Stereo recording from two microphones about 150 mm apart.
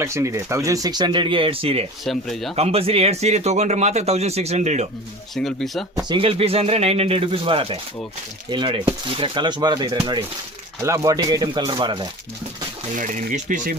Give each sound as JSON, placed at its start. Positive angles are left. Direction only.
{"t": 0.0, "sound": "speech", "side_deg": -20}
{"t": 2.0, "sound": "speech", "side_deg": 0}
{"t": 2.6, "sound": "speech", "side_deg": -40}
{"t": 5.3, "sound": "speech", "side_deg": 0}
{"t": 6.0, "sound": "speech", "side_deg": -30}
{"t": 12.9, "sound": "speech", "side_deg": -60}